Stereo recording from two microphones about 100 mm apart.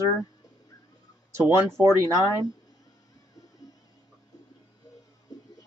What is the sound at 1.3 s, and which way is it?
Speech, 25° right (ahead or behind).